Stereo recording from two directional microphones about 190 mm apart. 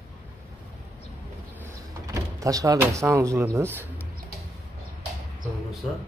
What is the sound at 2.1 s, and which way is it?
Speech, 15° right (ahead or behind).